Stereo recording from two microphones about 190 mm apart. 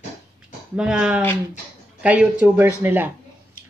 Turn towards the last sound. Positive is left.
turn(degrees=-10)  # may be behind; listen again after turning